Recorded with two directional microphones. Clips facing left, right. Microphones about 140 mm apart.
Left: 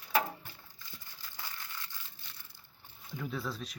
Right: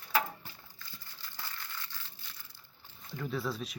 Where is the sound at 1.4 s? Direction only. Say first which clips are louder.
Right 1 dB; 15° left (ahead or behind).